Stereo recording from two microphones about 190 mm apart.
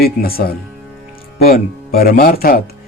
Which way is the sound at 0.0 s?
50° left (ahead or behind).